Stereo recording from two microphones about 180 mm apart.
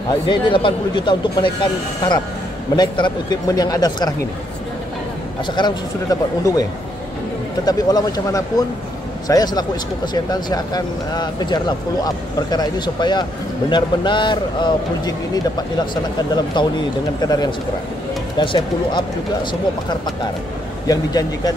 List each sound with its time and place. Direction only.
0.1 s speech: 25° left (ahead or behind)
5.6 s speech: 20° left (ahead or behind)
7.6 s speech: 20° left (ahead or behind)
20.8 s speech: 20° left (ahead or behind)